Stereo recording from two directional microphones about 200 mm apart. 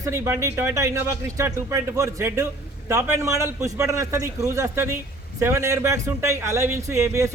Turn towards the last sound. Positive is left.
turn(degrees=-15)  # may be behind; listen again after turning